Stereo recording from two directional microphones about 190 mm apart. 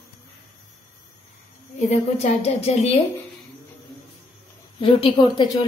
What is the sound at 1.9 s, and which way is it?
A woman's voice, 35° left (ahead or behind).